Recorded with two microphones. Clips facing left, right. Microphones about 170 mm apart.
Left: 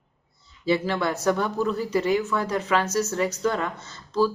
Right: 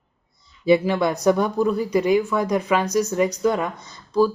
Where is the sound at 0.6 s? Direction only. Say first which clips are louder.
Right 6 dB; 15° right (ahead or behind).